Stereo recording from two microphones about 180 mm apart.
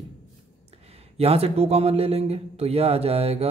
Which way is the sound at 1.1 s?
35° right (ahead or behind).